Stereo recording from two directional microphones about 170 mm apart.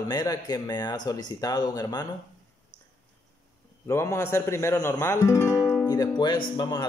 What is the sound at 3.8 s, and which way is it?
Speech, 15° left (ahead or behind).